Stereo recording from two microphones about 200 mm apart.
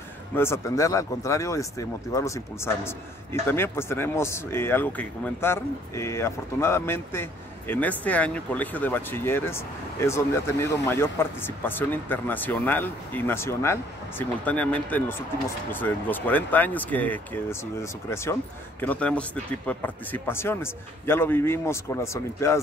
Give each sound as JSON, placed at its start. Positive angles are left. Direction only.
{"t": 0.4, "sound": "speech", "side_deg": 15}